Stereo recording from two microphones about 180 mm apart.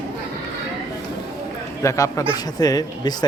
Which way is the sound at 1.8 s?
15° left (ahead or behind).